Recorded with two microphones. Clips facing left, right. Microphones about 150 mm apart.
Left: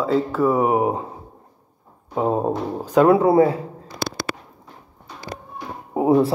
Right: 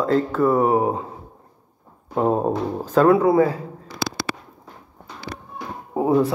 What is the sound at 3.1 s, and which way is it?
Speech, 25° left (ahead or behind).